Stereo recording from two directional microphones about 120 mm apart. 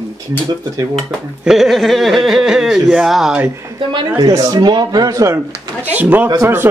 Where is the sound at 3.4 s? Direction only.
25° right (ahead or behind).